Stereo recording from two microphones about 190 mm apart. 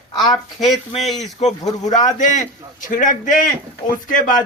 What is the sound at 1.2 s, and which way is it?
A man's voice, 35° left (ahead or behind).